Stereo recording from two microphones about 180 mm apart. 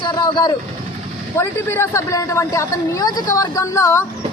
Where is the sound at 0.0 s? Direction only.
25° left (ahead or behind).